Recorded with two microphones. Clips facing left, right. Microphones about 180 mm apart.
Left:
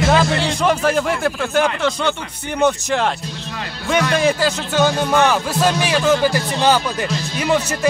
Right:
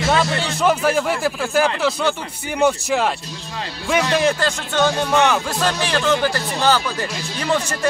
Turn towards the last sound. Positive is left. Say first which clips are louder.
# left 3 dB
turn(degrees=10)  # may be behind; listen again after turning